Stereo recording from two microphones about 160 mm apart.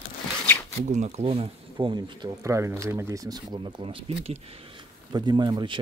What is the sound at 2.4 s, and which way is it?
Speech, 15° right (ahead or behind).